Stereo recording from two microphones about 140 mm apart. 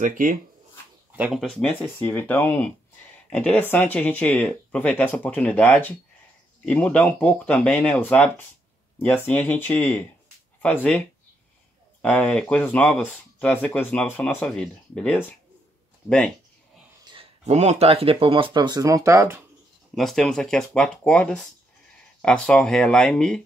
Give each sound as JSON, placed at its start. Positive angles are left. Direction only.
{"t": 0.0, "sound": "speech", "side_deg": -70}
{"t": 1.1, "sound": "speech", "side_deg": -10}
{"t": 1.4, "sound": "speech", "side_deg": 5}
{"t": 17.0, "sound": "a sound", "side_deg": -35}
{"t": 17.5, "sound": "speech", "side_deg": -50}
{"t": 20.0, "sound": "speech", "side_deg": 0}